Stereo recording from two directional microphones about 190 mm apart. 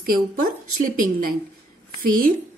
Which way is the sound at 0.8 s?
45° right (ahead or behind).